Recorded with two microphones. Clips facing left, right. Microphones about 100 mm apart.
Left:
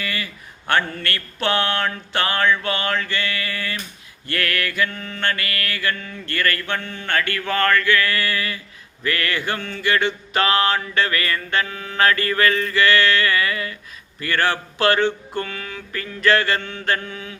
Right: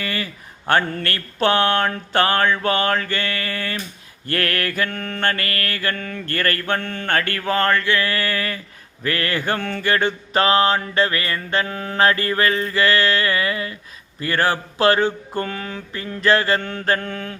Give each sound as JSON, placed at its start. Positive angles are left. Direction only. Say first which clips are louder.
{"t": 0.0, "sound": "a sound", "louder": "right 2 dB", "side_deg": -40}
{"t": 0.6, "sound": "mantra", "louder": "right 2 dB", "side_deg": -35}
{"t": 4.9, "sound": "mantra", "louder": "right 2 dB", "side_deg": -55}
{"t": 9.4, "sound": "mantra", "louder": "right 3 dB", "side_deg": -50}
{"t": 9.8, "sound": "mantra", "louder": "left 1 dB", "side_deg": -40}
{"t": 16.6, "sound": "mantra", "louder": "right 2 dB", "side_deg": -45}